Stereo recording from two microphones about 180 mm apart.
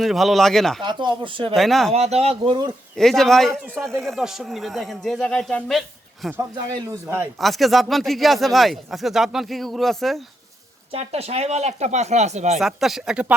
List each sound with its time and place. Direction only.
0.0 s speech: centre (ahead or behind)
0.8 s speech: 25° right (ahead or behind)
1.5 s speech: centre (ahead or behind)
1.9 s speech: 35° right (ahead or behind)
2.9 s speech: centre (ahead or behind)
6.3 s speech: 20° right (ahead or behind)
7.3 s speech: centre (ahead or behind)
10.9 s speech: 35° right (ahead or behind)
12.5 s speech: centre (ahead or behind)